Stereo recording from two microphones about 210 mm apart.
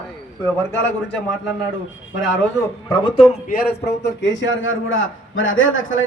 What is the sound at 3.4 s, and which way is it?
A man's voice, 50° left (ahead or behind).